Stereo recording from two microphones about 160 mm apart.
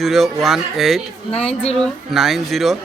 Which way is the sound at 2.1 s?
Centre (ahead or behind).